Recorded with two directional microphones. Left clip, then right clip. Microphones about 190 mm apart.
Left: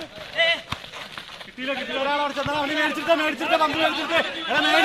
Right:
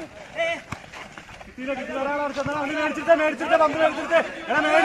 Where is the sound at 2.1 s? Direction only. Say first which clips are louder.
Left 2 dB; 30° right (ahead or behind).